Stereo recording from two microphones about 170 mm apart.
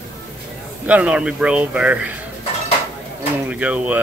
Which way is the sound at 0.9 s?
5° right (ahead or behind).